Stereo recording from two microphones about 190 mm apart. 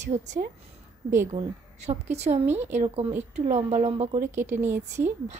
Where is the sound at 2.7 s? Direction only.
30° right (ahead or behind).